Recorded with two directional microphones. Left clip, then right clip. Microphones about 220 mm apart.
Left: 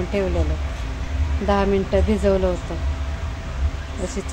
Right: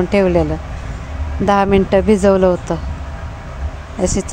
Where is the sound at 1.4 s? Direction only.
35° right (ahead or behind).